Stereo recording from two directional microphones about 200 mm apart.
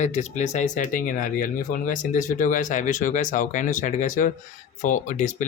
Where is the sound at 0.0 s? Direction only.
35° left (ahead or behind).